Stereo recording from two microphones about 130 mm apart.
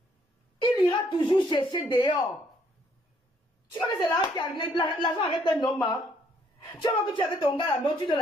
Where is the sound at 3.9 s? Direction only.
35° left (ahead or behind).